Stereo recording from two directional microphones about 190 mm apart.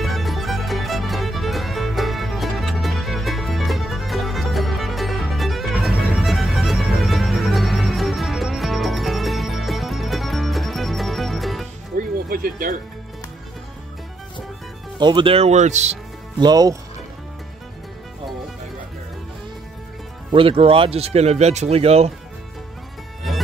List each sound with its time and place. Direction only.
0.0 s music: centre (ahead or behind)
11.9 s music: 50° right (ahead or behind)
15.0 s speech: 25° right (ahead or behind)
16.3 s speech: 20° right (ahead or behind)
20.2 s speech: 30° right (ahead or behind)